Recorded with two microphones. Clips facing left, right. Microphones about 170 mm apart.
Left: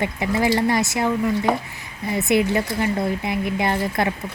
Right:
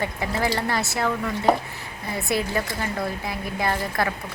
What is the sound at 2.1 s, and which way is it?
Speech, 20° left (ahead or behind).